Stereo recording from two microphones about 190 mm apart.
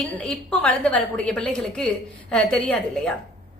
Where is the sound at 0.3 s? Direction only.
5° left (ahead or behind).